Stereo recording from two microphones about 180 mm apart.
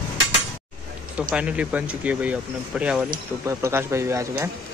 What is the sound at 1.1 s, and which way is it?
Speech, 5° right (ahead or behind).